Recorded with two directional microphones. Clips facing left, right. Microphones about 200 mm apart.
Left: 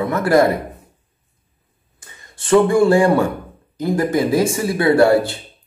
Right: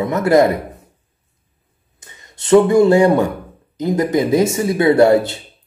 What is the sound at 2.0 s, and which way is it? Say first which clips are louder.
Speech: even; 20° right (ahead or behind).